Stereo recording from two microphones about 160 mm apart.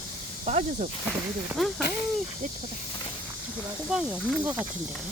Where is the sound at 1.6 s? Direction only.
Centre (ahead or behind).